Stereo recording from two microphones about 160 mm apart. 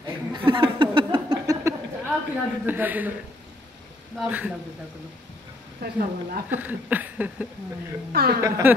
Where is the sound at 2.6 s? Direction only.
10° right (ahead or behind).